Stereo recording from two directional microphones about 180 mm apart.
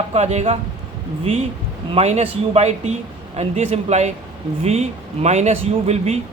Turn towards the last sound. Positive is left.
turn(degrees=-35)  # may be behind; listen again after turning